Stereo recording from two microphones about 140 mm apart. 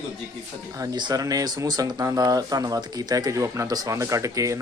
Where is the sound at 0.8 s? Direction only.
30° right (ahead or behind).